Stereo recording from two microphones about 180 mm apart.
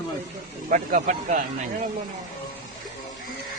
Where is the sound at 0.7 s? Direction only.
45° right (ahead or behind).